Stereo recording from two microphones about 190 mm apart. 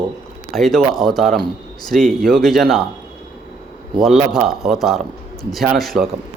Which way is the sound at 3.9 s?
Centre (ahead or behind).